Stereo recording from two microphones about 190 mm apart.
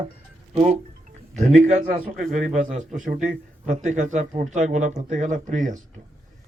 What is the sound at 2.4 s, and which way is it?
A man's voice, 40° right (ahead or behind).